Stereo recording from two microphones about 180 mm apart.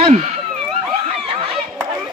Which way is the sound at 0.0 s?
30° right (ahead or behind).